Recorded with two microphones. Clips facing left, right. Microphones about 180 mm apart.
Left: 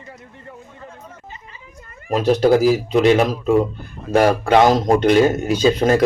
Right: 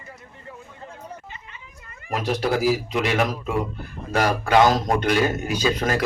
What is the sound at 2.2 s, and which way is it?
Speech, 30° left (ahead or behind).